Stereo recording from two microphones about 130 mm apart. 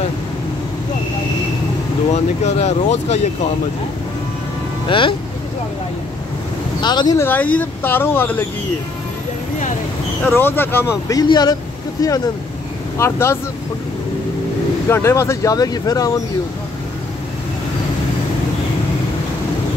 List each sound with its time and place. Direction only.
2.4 s speech: 60° left (ahead or behind)
4.8 s speech: 40° left (ahead or behind)
6.8 s speech: 35° left (ahead or behind)
7.2 s speech: 15° left (ahead or behind)
10.3 s speech: 15° left (ahead or behind)
11.1 s speech: 30° left (ahead or behind)
14.9 s speech: 20° left (ahead or behind)